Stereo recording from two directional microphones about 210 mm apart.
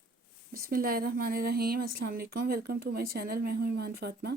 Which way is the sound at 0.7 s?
45° right (ahead or behind).